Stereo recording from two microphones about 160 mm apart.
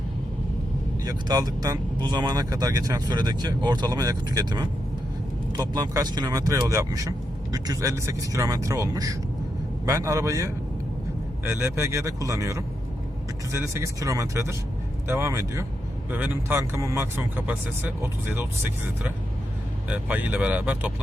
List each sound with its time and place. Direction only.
1.0 s speech: 25° right (ahead or behind)
19.9 s speech: 10° right (ahead or behind)